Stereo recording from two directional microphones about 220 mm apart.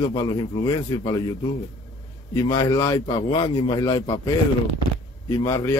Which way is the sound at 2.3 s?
15° left (ahead or behind).